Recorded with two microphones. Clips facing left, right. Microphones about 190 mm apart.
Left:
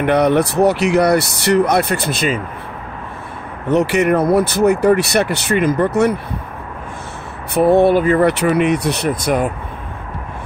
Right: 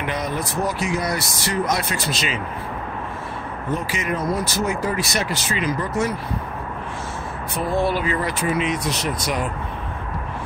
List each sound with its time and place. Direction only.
0.0 s speech: 65° left (ahead or behind)
3.7 s speech: 70° left (ahead or behind)
7.5 s speech: 65° left (ahead or behind)